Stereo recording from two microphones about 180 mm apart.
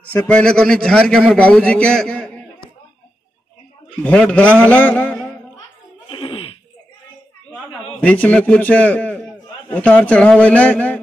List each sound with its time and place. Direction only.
0.0 s a man's voice: 5° left (ahead or behind)
4.0 s a man's voice: 5° left (ahead or behind)
6.0 s a sound: 30° left (ahead or behind)
8.0 s a man's voice: 10° left (ahead or behind)